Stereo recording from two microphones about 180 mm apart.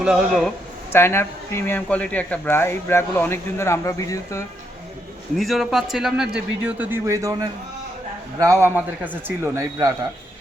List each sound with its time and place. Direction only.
0.0 s a man's voice: centre (ahead or behind)
0.9 s speech: 15° left (ahead or behind)
5.4 s a man's voice: centre (ahead or behind); by 9.9 s 20° right (ahead or behind)